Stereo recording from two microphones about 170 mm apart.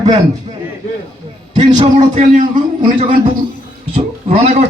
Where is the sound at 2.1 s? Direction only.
45° right (ahead or behind).